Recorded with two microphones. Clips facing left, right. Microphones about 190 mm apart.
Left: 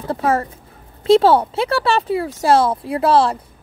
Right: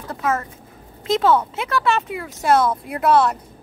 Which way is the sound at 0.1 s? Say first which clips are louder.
Left 5 dB; 35° left (ahead or behind).